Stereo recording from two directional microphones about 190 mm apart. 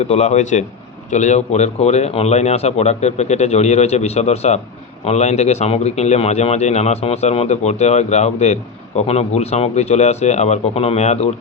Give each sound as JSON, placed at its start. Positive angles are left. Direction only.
{"t": 0.0, "sound": "a man's voice", "side_deg": 35}